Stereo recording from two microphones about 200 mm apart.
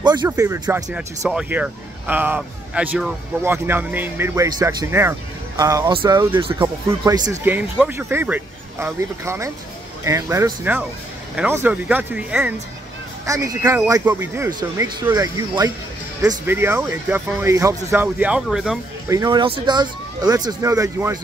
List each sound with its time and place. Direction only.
0.0 s speech: 20° right (ahead or behind); by 12.5 s 5° right (ahead or behind)
13.2 s speech: 15° right (ahead or behind)
19.0 s speech: 20° right (ahead or behind)